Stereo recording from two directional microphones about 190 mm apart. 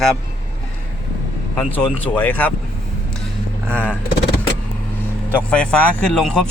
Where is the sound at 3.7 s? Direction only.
10° left (ahead or behind).